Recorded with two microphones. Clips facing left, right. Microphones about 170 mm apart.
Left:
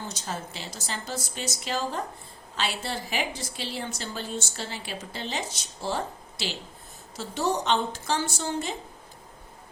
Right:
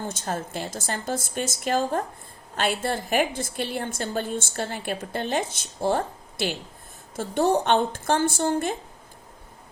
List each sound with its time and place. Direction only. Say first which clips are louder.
0.0 s a woman's voice: right 5 dB; 50° right (ahead or behind)